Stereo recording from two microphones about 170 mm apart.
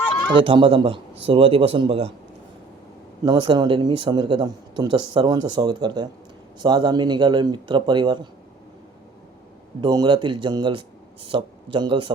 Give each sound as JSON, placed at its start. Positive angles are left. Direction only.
{"t": 0.0, "sound": "a sound", "side_deg": 10}
{"t": 0.4, "sound": "a man's voice", "side_deg": -30}
{"t": 3.2, "sound": "speech", "side_deg": -25}
{"t": 9.8, "sound": "speech", "side_deg": -25}